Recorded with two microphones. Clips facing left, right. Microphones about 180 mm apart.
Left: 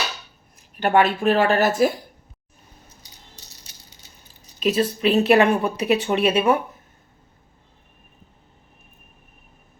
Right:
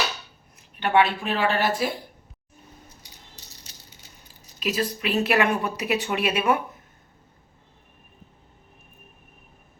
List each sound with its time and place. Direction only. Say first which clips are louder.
0.8 s speech: left 3 dB; 45° left (ahead or behind)
4.6 s a woman's voice: left 7 dB; 30° left (ahead or behind)